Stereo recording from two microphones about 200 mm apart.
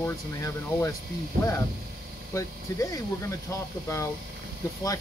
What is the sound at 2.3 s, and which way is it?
Speech, 15° left (ahead or behind).